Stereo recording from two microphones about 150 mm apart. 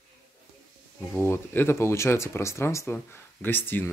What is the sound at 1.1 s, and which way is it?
Speech, 15° left (ahead or behind).